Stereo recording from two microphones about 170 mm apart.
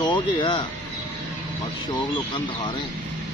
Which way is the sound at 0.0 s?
30° left (ahead or behind).